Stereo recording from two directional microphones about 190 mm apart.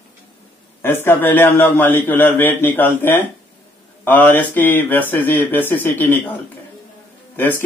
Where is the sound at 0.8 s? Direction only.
10° left (ahead or behind).